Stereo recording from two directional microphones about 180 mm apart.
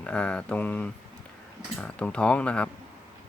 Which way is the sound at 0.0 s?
5° left (ahead or behind).